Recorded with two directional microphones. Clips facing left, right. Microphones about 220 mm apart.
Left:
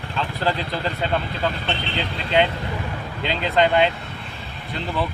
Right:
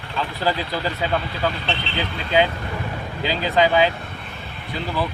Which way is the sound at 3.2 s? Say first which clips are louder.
Right 1 dB; 5° right (ahead or behind).